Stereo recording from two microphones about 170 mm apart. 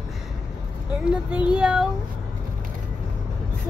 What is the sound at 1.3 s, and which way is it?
Speech, 5° right (ahead or behind).